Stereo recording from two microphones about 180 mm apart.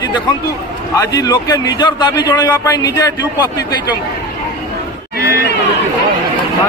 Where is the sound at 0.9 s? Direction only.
20° left (ahead or behind).